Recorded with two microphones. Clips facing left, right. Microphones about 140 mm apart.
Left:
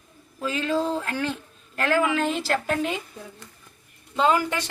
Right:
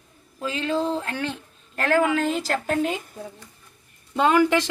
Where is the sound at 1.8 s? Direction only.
40° right (ahead or behind).